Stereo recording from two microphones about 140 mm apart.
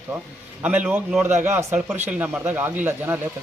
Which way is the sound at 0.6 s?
10° right (ahead or behind).